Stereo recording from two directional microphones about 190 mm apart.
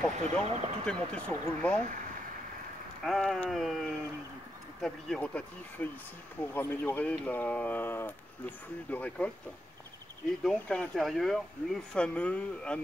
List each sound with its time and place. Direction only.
0.2 s speech: 30° right (ahead or behind)
0.8 s speech: 5° left (ahead or behind)
3.1 s speech: 5° left (ahead or behind)
10.4 s speech: 5° left (ahead or behind)